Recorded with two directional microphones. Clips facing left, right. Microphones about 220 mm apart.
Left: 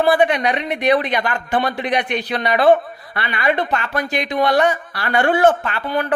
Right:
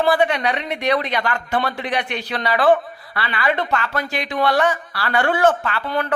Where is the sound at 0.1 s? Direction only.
15° left (ahead or behind).